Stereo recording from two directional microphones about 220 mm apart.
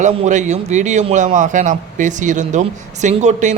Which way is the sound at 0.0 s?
35° right (ahead or behind).